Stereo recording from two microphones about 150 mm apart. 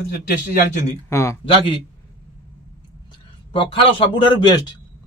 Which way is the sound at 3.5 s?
35° left (ahead or behind).